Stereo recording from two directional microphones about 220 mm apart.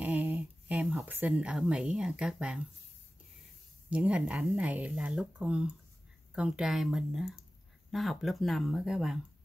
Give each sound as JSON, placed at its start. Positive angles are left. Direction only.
{"t": 0.0, "sound": "speech", "side_deg": -5}
{"t": 3.9, "sound": "speech", "side_deg": -5}